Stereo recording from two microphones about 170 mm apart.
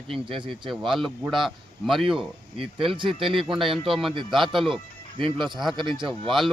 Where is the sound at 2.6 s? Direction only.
30° right (ahead or behind).